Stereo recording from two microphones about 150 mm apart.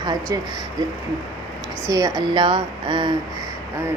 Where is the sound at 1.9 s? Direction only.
25° right (ahead or behind).